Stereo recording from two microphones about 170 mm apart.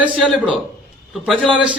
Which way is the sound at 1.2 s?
Centre (ahead or behind).